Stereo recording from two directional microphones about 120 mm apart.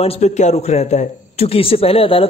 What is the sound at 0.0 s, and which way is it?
A man's voice, 70° left (ahead or behind).